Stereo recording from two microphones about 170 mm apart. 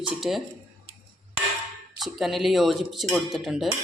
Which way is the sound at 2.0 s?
Centre (ahead or behind).